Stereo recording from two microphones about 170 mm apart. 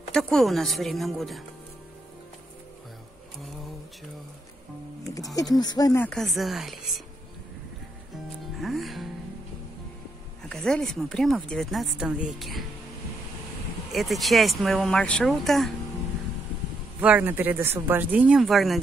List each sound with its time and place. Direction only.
0.1 s speech: 5° left (ahead or behind)
5.1 s speech: 20° left (ahead or behind)
6.0 s speech: centre (ahead or behind)
8.5 s music: centre (ahead or behind)
10.5 s speech: 5° left (ahead or behind)
13.9 s speech: centre (ahead or behind)
17.0 s speech: 10° right (ahead or behind)